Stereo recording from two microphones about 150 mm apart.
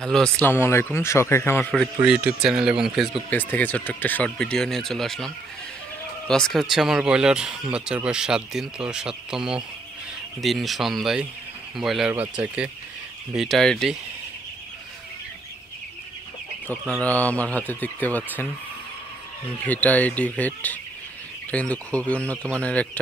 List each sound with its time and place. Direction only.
0.0 s speech: 5° left (ahead or behind)
2.0 s speech: 5° right (ahead or behind)
3.3 s speech: 10° left (ahead or behind)
17.0 s speech: 10° left (ahead or behind)
19.6 s speech: 10° left (ahead or behind)